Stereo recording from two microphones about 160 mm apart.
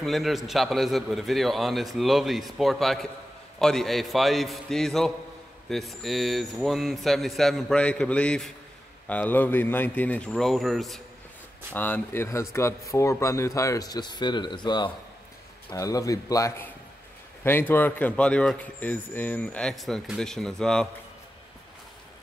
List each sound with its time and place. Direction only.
0.0 s a man's voice: centre (ahead or behind)
11.7 s a man's voice: 10° left (ahead or behind)